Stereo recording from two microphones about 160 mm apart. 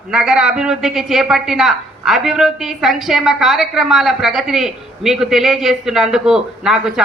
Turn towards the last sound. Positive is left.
turn(degrees=0)  # may be behind; listen again after turning